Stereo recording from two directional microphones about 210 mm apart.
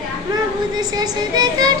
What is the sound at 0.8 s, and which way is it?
Speech, 20° right (ahead or behind).